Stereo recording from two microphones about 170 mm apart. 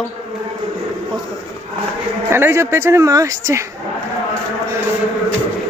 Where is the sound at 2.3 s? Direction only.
15° right (ahead or behind).